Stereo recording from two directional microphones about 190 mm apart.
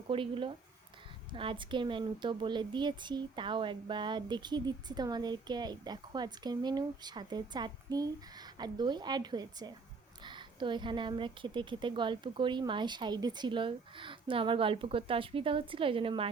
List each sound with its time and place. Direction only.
0.1 s speech: 25° right (ahead or behind)